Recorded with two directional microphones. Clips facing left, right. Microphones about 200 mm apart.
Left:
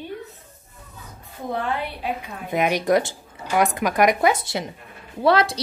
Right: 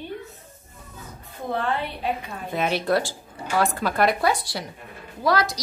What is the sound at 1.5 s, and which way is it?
Speech, 10° left (ahead or behind).